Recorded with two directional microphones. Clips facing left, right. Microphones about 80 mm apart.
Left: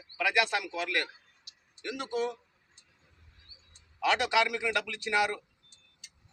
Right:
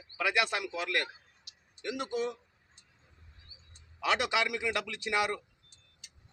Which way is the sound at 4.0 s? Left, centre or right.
Centre.